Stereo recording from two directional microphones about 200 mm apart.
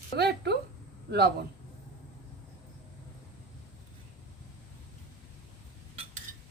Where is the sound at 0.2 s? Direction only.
55° right (ahead or behind).